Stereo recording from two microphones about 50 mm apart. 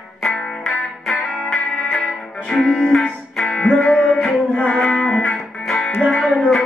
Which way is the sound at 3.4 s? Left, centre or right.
Centre.